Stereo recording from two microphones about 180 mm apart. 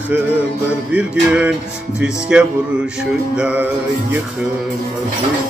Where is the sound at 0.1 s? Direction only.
10° right (ahead or behind).